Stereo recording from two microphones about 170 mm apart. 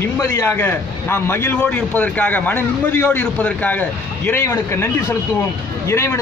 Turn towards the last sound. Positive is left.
turn(degrees=15)  # may be behind; listen again after turning